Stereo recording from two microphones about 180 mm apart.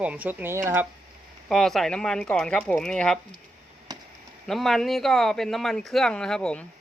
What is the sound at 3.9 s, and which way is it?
Chop, 25° right (ahead or behind).